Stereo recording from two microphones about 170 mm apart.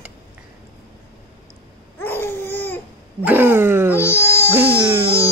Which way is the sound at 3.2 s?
10° right (ahead or behind).